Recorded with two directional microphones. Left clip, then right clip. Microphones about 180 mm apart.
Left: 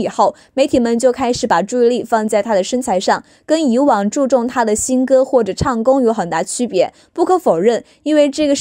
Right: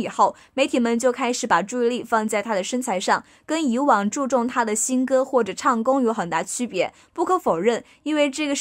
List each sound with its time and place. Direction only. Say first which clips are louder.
0.0 s speech: left 5 dB; 30° left (ahead or behind)